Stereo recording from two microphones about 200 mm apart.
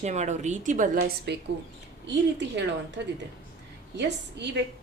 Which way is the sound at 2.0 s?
60° right (ahead or behind).